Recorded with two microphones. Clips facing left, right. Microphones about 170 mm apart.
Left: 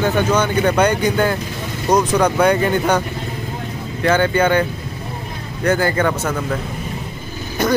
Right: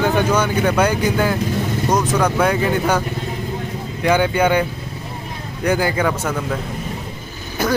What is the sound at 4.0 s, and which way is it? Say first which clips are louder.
Speech: left 1 dB; 15° right (ahead or behind).